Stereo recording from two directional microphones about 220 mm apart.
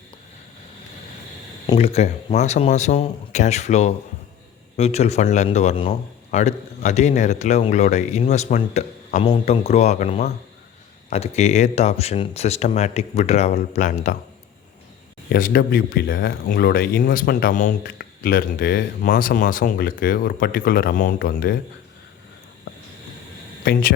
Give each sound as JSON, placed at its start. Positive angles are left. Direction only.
{"t": 1.6, "sound": "speech", "side_deg": 25}
{"t": 15.3, "sound": "speech", "side_deg": 40}